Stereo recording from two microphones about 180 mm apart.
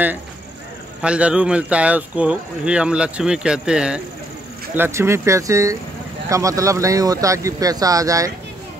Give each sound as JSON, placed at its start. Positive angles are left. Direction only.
{"t": 1.0, "sound": "speech", "side_deg": -5}